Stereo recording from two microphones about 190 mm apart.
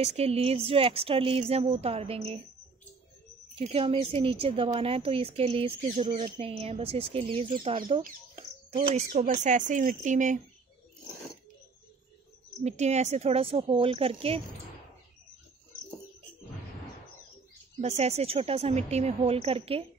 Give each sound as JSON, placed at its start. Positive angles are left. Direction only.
{"t": 0.0, "sound": "speech", "side_deg": -35}
{"t": 3.5, "sound": "speech", "side_deg": -30}
{"t": 9.1, "sound": "speech", "side_deg": -45}
{"t": 12.6, "sound": "speech", "side_deg": -35}
{"t": 17.7, "sound": "speech", "side_deg": -35}